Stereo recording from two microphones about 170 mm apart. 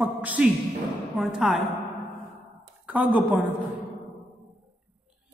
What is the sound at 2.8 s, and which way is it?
Speech, 10° right (ahead or behind).